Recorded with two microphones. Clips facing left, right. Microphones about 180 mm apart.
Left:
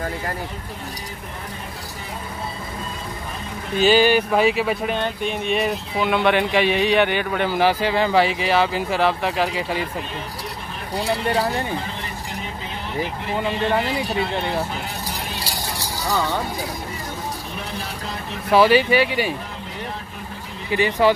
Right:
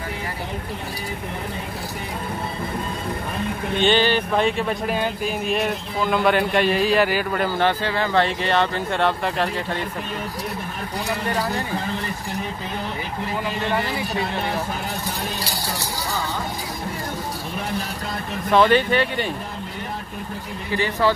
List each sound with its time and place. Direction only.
3.7 s speech: 5° left (ahead or behind)
11.0 s speech: 30° left (ahead or behind)
18.5 s speech: 5° left (ahead or behind)
20.7 s speech: 15° left (ahead or behind)